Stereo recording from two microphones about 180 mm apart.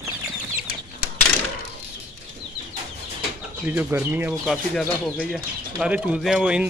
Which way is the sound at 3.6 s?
10° right (ahead or behind).